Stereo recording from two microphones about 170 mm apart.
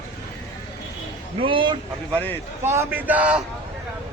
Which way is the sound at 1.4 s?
30° right (ahead or behind).